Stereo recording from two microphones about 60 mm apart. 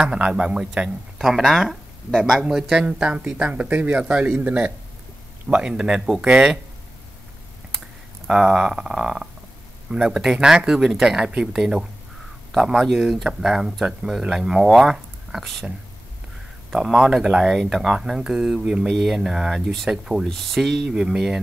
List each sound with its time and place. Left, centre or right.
0.0 s speech: centre
2.4 s a man's voice: centre
5.5 s speech: centre
8.3 s speech: centre
16.7 s speech: centre
20.9 s speech: centre